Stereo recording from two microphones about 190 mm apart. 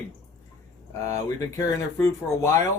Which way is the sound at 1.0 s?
15° left (ahead or behind).